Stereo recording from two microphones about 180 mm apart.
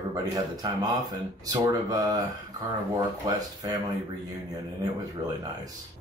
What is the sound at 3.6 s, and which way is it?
Speech, 20° right (ahead or behind).